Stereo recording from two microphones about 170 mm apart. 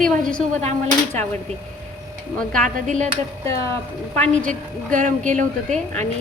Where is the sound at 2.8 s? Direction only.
45° right (ahead or behind).